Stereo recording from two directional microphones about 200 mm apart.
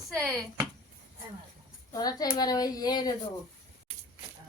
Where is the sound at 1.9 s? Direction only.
20° left (ahead or behind).